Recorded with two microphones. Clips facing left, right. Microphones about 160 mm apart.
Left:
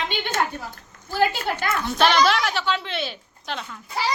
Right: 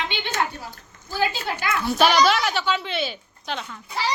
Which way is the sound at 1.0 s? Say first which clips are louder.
Left 3 dB; 55° left (ahead or behind).